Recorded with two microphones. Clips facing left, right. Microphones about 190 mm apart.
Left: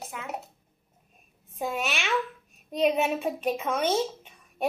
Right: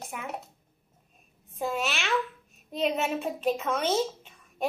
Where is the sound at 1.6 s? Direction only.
Centre (ahead or behind).